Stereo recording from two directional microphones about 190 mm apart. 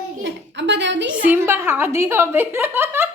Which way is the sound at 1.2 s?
10° right (ahead or behind).